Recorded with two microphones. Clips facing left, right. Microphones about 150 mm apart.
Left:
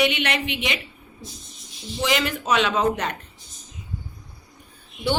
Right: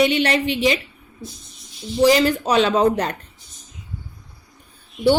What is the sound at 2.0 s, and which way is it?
A woman's voice, 35° right (ahead or behind).